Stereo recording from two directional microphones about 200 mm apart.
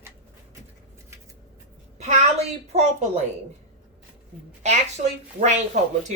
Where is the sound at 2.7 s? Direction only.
35° right (ahead or behind).